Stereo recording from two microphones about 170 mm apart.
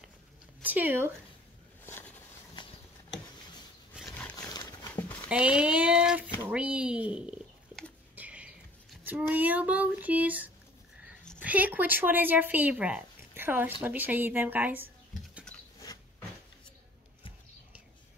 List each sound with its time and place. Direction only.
0.6 s speech: 10° right (ahead or behind)
1.9 s a sound: 10° left (ahead or behind)
3.9 s wild animals: 5° left (ahead or behind)
4.5 s dog: 20° left (ahead or behind)
5.3 s speech: 5° right (ahead or behind)
6.5 s a sound: 5° right (ahead or behind)
9.0 s speech: 10° right (ahead or behind)
15.5 s patter: 5° left (ahead or behind)
15.8 s a sound: 20° left (ahead or behind)